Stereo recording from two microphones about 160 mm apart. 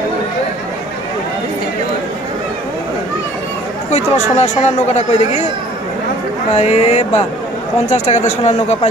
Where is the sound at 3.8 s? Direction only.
45° left (ahead or behind).